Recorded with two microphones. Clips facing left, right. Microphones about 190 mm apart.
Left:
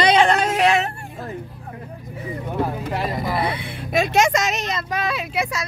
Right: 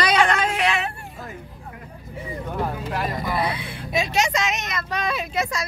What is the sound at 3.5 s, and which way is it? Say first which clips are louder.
Vehicle: left 4 dB; 55° left (ahead or behind).